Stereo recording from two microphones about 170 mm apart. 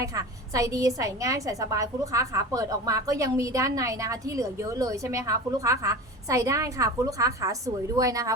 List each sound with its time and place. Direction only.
0.0 s a woman's voice: 20° right (ahead or behind)